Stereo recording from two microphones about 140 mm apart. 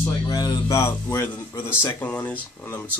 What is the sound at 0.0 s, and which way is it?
Speech, 30° left (ahead or behind).